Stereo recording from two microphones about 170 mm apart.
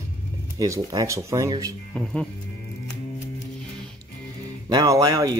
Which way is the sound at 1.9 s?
5° left (ahead or behind).